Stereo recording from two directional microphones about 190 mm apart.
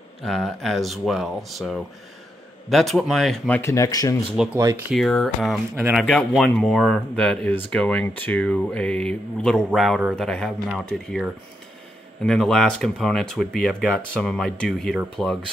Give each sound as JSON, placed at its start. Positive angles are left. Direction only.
{"t": 0.2, "sound": "speech", "side_deg": 0}
{"t": 4.9, "sound": "speech", "side_deg": 0}